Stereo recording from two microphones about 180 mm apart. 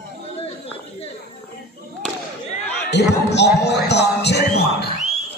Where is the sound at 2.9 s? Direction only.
70° left (ahead or behind).